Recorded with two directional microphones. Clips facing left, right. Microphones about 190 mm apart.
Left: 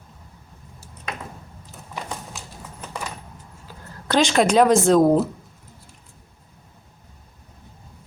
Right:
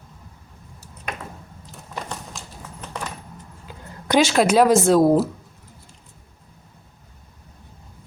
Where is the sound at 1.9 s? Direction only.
5° left (ahead or behind).